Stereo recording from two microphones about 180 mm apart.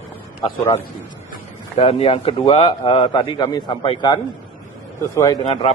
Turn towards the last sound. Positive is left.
turn(degrees=30)  # may be behind; listen again after turning